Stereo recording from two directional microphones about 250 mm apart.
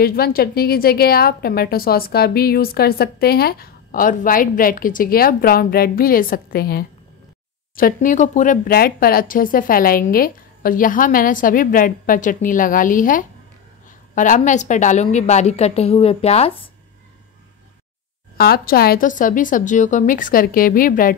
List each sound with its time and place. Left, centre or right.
0.0 s a woman's voice: left
18.4 s a woman's voice: left